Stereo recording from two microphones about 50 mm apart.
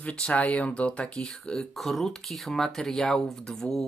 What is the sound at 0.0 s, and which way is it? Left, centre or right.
Speech, left.